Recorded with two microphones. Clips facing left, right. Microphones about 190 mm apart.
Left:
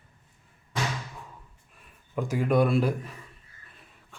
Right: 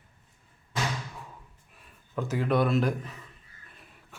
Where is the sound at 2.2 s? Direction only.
10° left (ahead or behind).